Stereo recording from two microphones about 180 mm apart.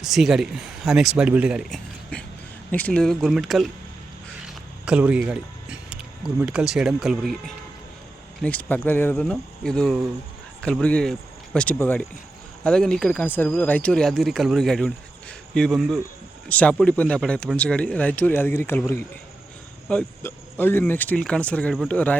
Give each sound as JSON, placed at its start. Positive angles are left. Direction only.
{"t": 0.0, "sound": "speech", "side_deg": 0}